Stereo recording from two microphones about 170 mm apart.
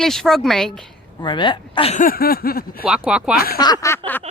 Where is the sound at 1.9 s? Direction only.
55° left (ahead or behind).